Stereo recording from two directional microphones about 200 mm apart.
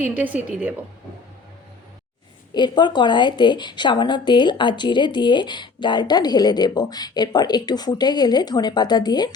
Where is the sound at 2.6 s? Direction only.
20° left (ahead or behind).